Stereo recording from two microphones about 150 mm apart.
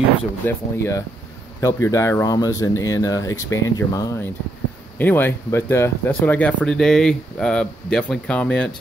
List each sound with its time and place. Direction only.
0.5 s speech: 20° left (ahead or behind)